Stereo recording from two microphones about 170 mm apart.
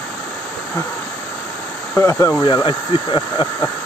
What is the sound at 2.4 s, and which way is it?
Speech, 30° left (ahead or behind).